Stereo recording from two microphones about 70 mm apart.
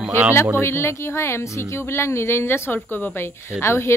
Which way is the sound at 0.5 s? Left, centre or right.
Left.